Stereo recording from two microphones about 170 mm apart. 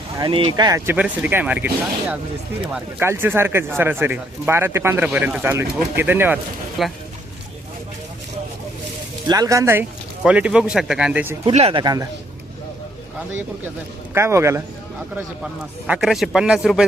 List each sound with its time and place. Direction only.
0.2 s speech: 30° right (ahead or behind)
0.9 s speech: 10° right (ahead or behind)
6.8 s speech: centre (ahead or behind)
9.3 s speech: 20° right (ahead or behind)
11.5 s speech: 35° right (ahead or behind)
11.8 s speech: 25° right (ahead or behind)
14.1 s speech: 15° right (ahead or behind)
15.9 s speech: centre (ahead or behind)